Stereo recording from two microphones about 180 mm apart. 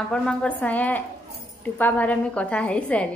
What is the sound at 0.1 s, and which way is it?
A woman's voice, 5° left (ahead or behind).